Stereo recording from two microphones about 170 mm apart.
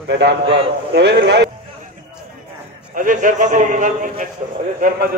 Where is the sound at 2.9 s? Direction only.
50° right (ahead or behind).